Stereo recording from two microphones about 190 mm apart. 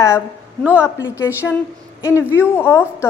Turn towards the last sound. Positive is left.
turn(degrees=15)  # may be behind; listen again after turning